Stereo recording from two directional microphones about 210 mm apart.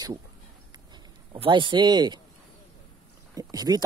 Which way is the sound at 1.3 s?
25° right (ahead or behind).